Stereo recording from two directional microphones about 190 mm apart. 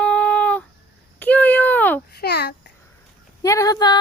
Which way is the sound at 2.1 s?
55° left (ahead or behind).